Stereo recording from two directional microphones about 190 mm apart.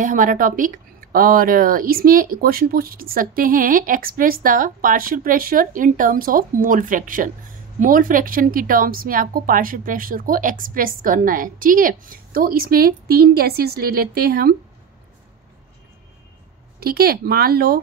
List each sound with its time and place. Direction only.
0.0 s speech: 45° right (ahead or behind)
16.8 s speech: 50° right (ahead or behind)